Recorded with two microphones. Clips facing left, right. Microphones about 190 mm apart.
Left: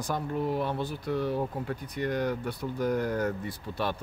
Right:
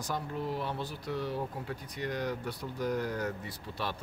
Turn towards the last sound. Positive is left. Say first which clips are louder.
# left 6 dB
turn(degrees=50)  # may be behind; listen again after turning